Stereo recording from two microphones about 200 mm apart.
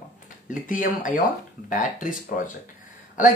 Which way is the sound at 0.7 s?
40° left (ahead or behind).